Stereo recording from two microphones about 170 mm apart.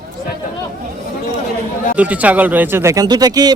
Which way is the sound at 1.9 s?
10° right (ahead or behind).